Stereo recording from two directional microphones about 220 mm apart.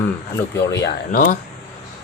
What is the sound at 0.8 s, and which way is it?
Speech, 35° left (ahead or behind).